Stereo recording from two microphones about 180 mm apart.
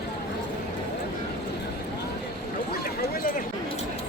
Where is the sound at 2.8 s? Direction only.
50° left (ahead or behind).